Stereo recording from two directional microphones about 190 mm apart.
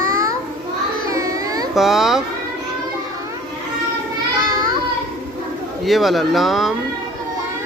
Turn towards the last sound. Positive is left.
turn(degrees=0)  # may be behind; listen again after turning